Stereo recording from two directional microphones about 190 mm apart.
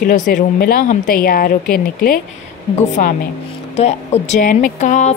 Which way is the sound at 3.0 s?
45° left (ahead or behind).